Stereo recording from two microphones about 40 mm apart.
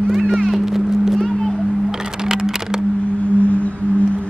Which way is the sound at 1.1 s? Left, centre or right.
Centre.